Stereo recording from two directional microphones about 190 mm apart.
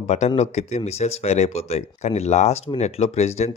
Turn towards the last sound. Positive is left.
turn(degrees=35)  # may be behind; listen again after turning